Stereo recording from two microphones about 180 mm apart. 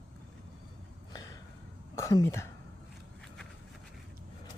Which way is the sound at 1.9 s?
15° left (ahead or behind).